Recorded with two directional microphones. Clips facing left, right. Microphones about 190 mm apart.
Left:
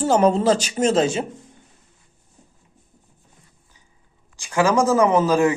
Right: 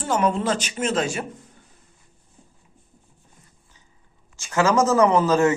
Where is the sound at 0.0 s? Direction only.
30° left (ahead or behind).